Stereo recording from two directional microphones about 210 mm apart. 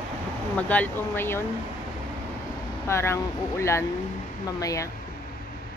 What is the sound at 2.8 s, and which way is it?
Speech, 15° left (ahead or behind).